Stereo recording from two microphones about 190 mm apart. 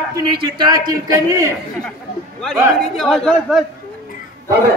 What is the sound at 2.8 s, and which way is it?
Speech, centre (ahead or behind).